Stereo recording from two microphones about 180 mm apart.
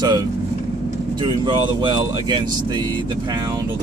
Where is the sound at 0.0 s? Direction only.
20° right (ahead or behind).